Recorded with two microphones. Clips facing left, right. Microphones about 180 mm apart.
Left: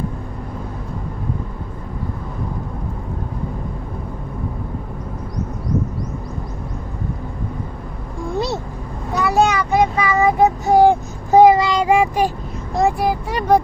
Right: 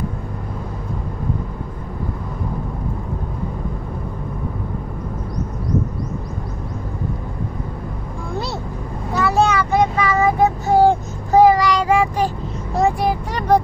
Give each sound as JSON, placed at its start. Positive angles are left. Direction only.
{"t": 9.2, "sound": "child singing", "side_deg": 15}
{"t": 12.8, "sound": "vehicle", "side_deg": 5}